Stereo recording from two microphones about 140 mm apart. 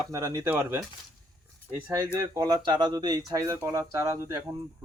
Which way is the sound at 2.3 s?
25° right (ahead or behind).